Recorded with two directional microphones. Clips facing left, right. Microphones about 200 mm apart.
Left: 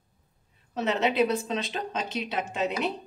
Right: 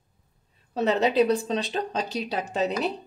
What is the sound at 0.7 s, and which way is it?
A woman's voice, 35° right (ahead or behind).